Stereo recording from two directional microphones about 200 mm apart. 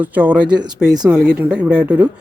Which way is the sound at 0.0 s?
10° right (ahead or behind).